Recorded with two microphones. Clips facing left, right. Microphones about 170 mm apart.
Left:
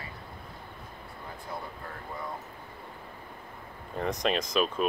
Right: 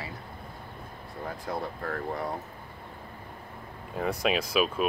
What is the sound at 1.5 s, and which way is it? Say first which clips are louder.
Speech: right 6 dB; 70° right (ahead or behind).